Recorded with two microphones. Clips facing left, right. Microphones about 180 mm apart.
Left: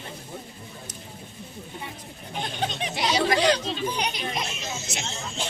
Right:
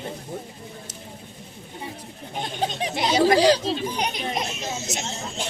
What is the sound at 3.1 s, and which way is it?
Speech, 35° right (ahead or behind).